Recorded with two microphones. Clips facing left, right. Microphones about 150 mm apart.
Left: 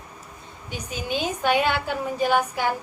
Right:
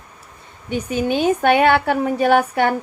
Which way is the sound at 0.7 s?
55° right (ahead or behind).